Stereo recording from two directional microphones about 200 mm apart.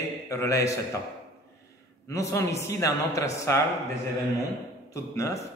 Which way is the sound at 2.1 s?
15° left (ahead or behind).